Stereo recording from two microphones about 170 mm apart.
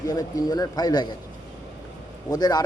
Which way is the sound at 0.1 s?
20° left (ahead or behind).